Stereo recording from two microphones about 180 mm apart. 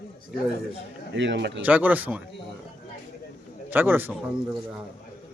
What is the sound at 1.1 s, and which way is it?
Speech, 80° right.